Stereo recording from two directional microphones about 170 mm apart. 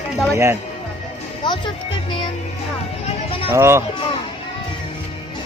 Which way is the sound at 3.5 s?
15° right (ahead or behind).